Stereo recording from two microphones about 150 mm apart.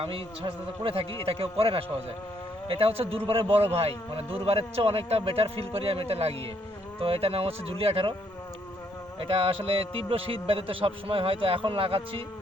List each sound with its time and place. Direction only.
0.0 s a man's voice: 35° right (ahead or behind)
9.2 s a man's voice: 40° right (ahead or behind)